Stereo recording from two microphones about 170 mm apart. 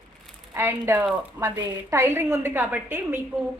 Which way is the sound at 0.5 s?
15° right (ahead or behind).